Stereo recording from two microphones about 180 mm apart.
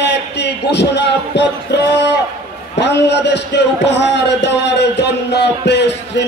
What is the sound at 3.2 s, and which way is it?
Speech, 70° left (ahead or behind).